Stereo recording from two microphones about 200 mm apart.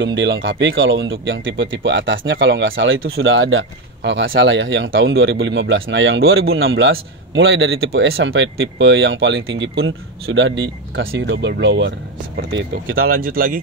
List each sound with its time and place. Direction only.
0.0 s speech: 65° right (ahead or behind)
12.9 s speech: 50° right (ahead or behind)